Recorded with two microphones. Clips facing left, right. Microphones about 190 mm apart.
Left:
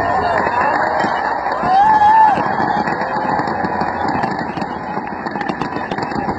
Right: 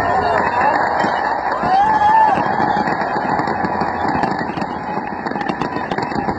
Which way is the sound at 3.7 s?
Centre (ahead or behind).